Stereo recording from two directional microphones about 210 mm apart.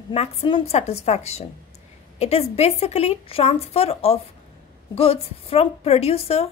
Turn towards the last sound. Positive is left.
turn(degrees=30)  # may be behind; listen again after turning